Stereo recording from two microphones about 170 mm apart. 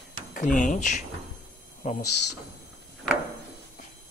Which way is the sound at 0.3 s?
50° left (ahead or behind).